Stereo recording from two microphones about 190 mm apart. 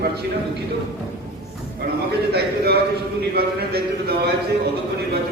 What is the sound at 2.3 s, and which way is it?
A man's voice, 55° right (ahead or behind).